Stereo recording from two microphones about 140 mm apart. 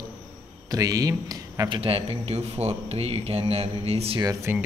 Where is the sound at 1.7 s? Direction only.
40° right (ahead or behind).